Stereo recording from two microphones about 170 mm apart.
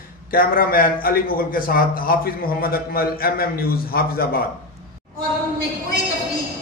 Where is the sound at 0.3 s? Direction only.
55° left (ahead or behind).